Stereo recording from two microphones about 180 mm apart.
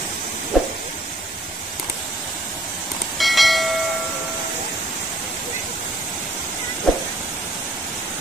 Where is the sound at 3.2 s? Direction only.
Centre (ahead or behind).